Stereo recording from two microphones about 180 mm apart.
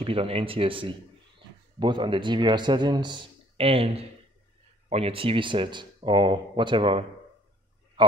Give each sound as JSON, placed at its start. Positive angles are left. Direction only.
{"t": 0.0, "sound": "speech", "side_deg": -30}